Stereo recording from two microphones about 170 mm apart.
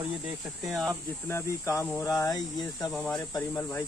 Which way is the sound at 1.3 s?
15° left (ahead or behind).